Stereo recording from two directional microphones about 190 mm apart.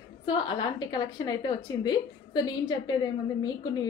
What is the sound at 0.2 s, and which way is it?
A woman's voice, 25° left (ahead or behind).